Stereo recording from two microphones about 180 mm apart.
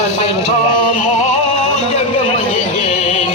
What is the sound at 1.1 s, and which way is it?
Music, 35° left (ahead or behind).